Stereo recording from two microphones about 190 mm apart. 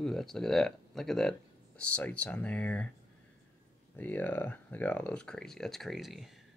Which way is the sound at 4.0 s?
10° left (ahead or behind).